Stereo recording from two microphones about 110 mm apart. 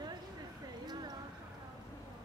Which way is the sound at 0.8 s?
40° right (ahead or behind).